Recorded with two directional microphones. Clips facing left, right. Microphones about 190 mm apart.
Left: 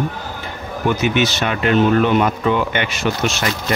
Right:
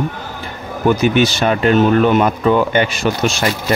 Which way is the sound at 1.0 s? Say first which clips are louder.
Right 4 dB; 35° right (ahead or behind).